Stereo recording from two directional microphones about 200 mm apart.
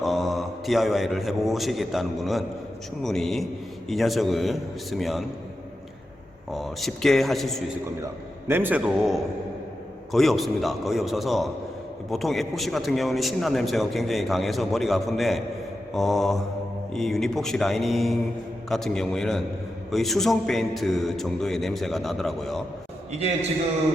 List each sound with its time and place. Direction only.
0.0 s a man's voice: centre (ahead or behind)
6.5 s a man's voice: centre (ahead or behind)
8.4 s a man's voice: 10° right (ahead or behind)
23.1 s a man's voice: 35° right (ahead or behind)